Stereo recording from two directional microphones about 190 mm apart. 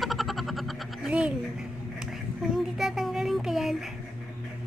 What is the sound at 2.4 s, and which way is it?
Child singing, centre (ahead or behind).